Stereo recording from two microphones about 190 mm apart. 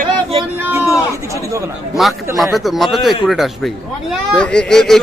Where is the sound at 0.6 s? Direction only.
10° right (ahead or behind).